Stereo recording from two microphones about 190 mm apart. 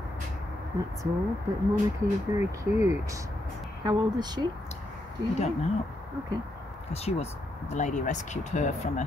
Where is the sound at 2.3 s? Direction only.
15° right (ahead or behind).